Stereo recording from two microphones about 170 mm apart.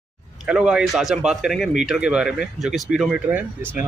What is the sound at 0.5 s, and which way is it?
A man's voice, 5° right (ahead or behind).